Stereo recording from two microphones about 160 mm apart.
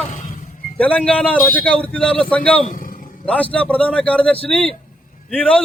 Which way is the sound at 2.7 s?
60° left (ahead or behind).